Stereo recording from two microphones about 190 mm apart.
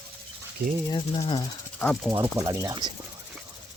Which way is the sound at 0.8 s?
20° left (ahead or behind).